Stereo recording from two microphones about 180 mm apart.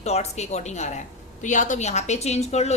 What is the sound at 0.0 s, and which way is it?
A woman's voice, 35° left (ahead or behind).